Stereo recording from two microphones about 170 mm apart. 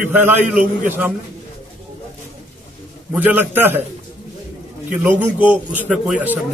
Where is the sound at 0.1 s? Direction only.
10° right (ahead or behind).